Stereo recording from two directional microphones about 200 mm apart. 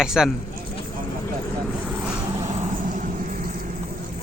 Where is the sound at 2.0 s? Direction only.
15° right (ahead or behind).